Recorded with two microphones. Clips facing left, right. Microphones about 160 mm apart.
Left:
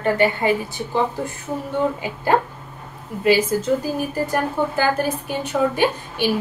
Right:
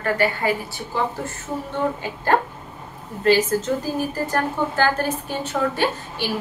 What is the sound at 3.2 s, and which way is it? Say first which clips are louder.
A woman's voice: even; 10° left (ahead or behind).